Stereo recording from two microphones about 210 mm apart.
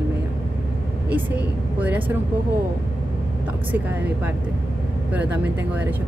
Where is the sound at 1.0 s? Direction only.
5° right (ahead or behind).